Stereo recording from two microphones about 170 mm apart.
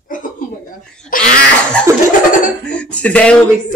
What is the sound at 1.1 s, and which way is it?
Cough, 55° left (ahead or behind).